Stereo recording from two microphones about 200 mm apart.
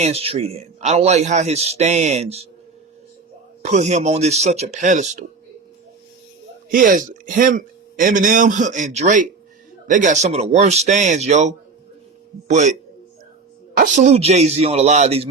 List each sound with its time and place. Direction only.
0.0 s a man's voice: 30° right (ahead or behind)
3.6 s a man's voice: 35° right (ahead or behind)
6.7 s a man's voice: 45° right (ahead or behind)
13.9 s a man's voice: 35° right (ahead or behind)